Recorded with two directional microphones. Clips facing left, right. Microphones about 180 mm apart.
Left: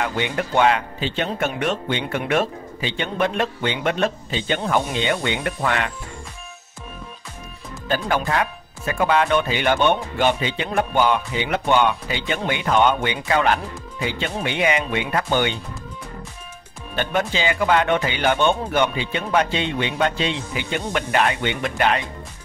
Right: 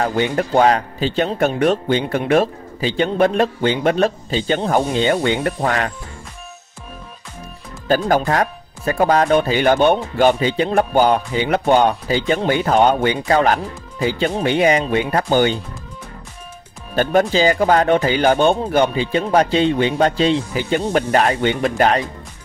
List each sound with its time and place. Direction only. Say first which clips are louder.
0.0 s speech: right 5 dB; 35° right (ahead or behind)
8.3 s speech: right 4 dB; 40° right (ahead or behind)
16.9 s speech: right 7 dB; 40° right (ahead or behind)